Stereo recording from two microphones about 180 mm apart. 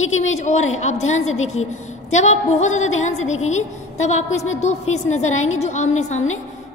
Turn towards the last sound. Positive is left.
turn(degrees=40)  # may be behind; listen again after turning